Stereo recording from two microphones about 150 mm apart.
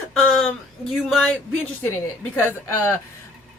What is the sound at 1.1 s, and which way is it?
Speech, centre (ahead or behind).